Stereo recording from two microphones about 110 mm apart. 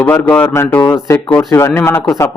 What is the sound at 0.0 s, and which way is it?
Speech, 15° left (ahead or behind).